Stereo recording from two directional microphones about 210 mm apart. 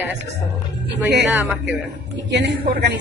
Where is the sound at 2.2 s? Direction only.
55° right (ahead or behind).